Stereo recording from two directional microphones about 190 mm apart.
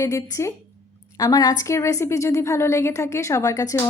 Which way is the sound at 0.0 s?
15° left (ahead or behind).